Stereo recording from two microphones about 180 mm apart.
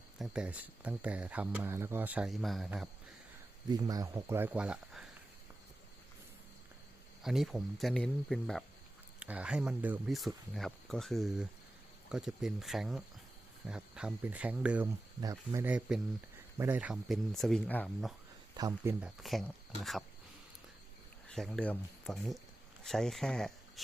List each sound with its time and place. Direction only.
0.2 s speech: 5° right (ahead or behind)
3.7 s speech: 20° right (ahead or behind); by 5.0 s 5° right (ahead or behind)
7.2 s speech: centre (ahead or behind)
15.2 s speech: 20° right (ahead or behind); by 18.1 s 5° left (ahead or behind)
18.5 s speech: 20° right (ahead or behind)
19.0 s speech: centre (ahead or behind)
21.2 s speech: centre (ahead or behind)